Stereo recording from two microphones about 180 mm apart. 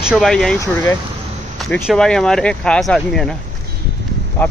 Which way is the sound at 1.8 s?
5° left (ahead or behind).